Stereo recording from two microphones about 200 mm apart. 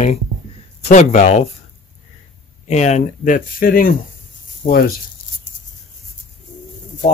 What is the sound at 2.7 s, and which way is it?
Speech, 35° left (ahead or behind).